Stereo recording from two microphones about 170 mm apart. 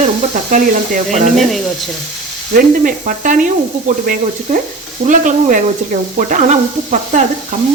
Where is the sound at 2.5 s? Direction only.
55° right (ahead or behind).